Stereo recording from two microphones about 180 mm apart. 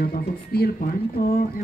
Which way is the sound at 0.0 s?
60° left (ahead or behind).